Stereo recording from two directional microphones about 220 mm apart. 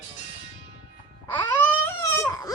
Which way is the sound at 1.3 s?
10° left (ahead or behind).